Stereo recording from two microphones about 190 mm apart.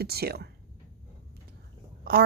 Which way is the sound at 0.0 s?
55° right (ahead or behind).